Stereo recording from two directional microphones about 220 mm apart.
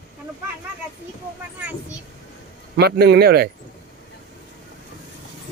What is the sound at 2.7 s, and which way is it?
Speech, 50° right (ahead or behind).